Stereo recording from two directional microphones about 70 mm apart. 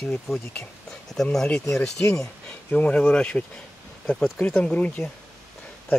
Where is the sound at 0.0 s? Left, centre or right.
Centre.